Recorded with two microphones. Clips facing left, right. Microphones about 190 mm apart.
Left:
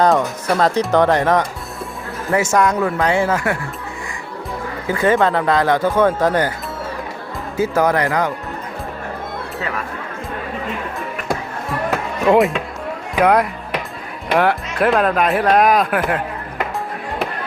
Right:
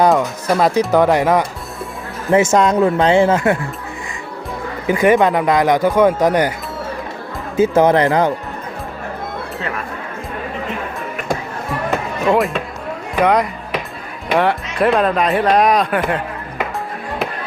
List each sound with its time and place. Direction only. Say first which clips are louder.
0.1 s speech: right 1 dB; 5° right (ahead or behind)
2.3 s speech: right 4 dB; 20° right (ahead or behind)
4.9 s speech: right 3 dB; 15° right (ahead or behind)
7.5 s speech: right 5 dB; 20° right (ahead or behind)
13.1 s speech: even; 5° left (ahead or behind)